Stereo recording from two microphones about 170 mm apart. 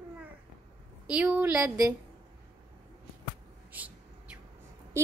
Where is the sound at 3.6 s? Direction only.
10° right (ahead or behind).